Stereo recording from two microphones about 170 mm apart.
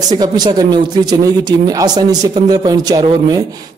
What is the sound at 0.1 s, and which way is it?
Speech, 25° right (ahead or behind).